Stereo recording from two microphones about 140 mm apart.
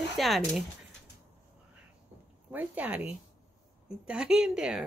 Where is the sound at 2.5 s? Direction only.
10° right (ahead or behind).